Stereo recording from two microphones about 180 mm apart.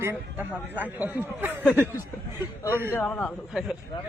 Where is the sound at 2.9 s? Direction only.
5° left (ahead or behind).